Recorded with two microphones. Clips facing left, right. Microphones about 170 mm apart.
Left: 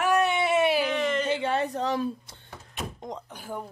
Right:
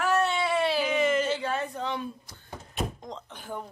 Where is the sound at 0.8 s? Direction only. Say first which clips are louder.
Right 1 dB; 5° right (ahead or behind).